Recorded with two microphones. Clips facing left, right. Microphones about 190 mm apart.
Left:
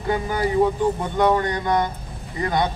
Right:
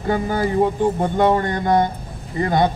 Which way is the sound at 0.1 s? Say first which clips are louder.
Right 2 dB; 45° right (ahead or behind).